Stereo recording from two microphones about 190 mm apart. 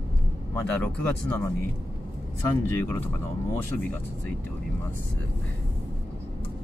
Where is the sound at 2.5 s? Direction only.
15° left (ahead or behind).